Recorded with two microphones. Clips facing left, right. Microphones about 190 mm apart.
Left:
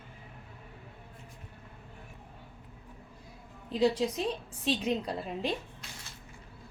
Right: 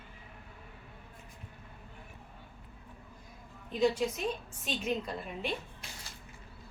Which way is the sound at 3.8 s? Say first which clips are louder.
Left 2 dB; 35° left (ahead or behind).